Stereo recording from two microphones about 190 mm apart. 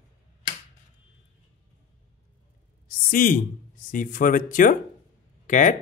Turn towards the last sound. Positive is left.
turn(degrees=40)  # may be behind; listen again after turning